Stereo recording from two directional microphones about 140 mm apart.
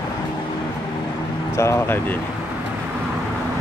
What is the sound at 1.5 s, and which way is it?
Speech, 20° left (ahead or behind).